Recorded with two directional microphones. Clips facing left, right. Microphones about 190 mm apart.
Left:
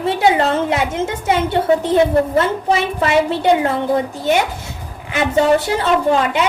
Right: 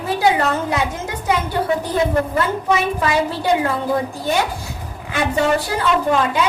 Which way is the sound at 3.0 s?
25° left (ahead or behind).